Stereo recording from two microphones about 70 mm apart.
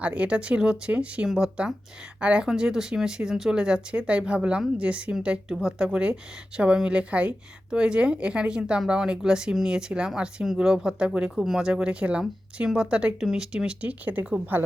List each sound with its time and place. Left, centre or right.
0.0 s a woman's voice: centre
14.0 s a woman's voice: right